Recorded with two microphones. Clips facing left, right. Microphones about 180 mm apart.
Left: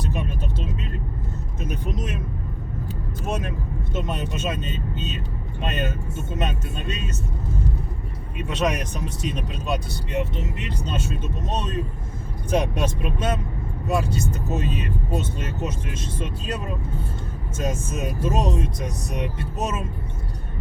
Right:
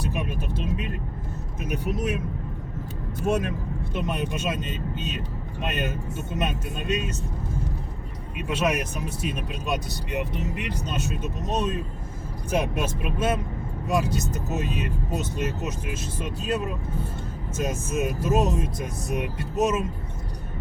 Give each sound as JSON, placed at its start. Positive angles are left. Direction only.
{"t": 0.0, "sound": "vehicle", "side_deg": -10}
{"t": 1.6, "sound": "speech", "side_deg": -10}
{"t": 3.9, "sound": "speech", "side_deg": -10}
{"t": 8.4, "sound": "speech", "side_deg": -10}
{"t": 17.6, "sound": "speech", "side_deg": -10}